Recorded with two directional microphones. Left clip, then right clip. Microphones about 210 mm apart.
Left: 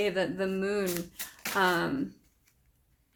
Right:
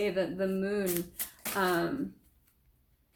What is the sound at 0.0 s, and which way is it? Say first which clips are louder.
Speech: left 1 dB; 50° left (ahead or behind).